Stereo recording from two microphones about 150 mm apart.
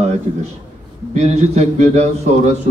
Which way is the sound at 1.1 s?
50° right (ahead or behind).